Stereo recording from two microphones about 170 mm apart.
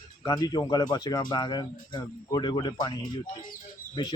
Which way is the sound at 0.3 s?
25° left (ahead or behind).